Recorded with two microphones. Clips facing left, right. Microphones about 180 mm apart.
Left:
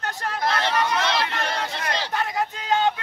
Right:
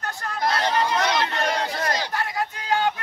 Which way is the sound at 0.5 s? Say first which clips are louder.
Right 1 dB; 30° right (ahead or behind).